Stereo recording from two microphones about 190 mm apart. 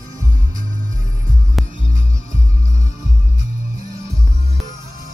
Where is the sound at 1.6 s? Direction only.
Centre (ahead or behind).